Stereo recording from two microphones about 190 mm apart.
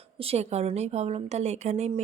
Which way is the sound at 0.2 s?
35° right (ahead or behind).